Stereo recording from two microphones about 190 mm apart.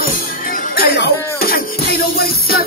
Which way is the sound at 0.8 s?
50° left (ahead or behind).